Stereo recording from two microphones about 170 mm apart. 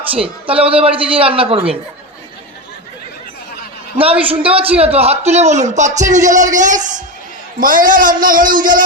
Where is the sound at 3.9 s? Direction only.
35° right (ahead or behind).